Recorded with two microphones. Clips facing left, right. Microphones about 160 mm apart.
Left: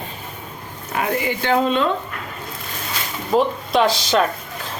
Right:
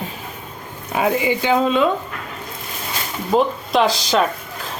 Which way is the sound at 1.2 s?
15° right (ahead or behind).